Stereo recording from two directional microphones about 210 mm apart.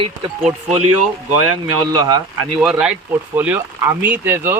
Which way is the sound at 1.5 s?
20° right (ahead or behind).